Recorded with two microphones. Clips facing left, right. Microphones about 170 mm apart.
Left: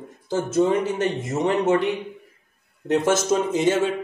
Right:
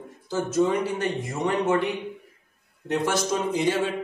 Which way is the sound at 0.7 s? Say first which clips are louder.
Left 3 dB; 20° left (ahead or behind).